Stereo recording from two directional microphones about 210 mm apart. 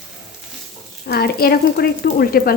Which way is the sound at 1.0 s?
45° left (ahead or behind).